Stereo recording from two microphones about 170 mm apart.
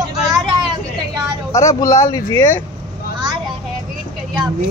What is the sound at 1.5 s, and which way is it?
Speech, 20° left (ahead or behind).